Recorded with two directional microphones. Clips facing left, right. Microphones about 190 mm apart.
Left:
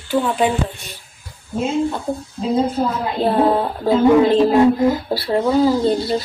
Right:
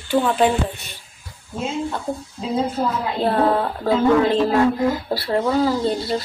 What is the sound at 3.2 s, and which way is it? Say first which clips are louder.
Music: left 3 dB; 15° left (ahead or behind).